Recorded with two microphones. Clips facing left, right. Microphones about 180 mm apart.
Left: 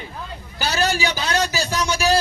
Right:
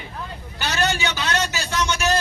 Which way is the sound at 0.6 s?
35° left (ahead or behind).